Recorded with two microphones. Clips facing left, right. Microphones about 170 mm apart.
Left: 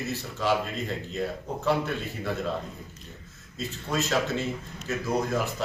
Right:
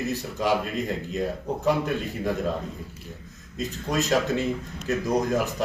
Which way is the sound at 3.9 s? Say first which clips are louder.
Right 3 dB; 40° right (ahead or behind).